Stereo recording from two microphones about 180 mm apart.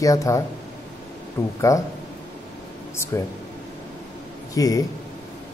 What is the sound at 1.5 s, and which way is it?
Speech, 15° left (ahead or behind).